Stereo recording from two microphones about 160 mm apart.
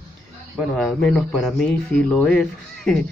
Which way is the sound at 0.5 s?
5° left (ahead or behind).